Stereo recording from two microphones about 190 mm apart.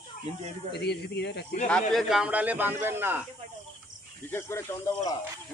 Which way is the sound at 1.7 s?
Centre (ahead or behind).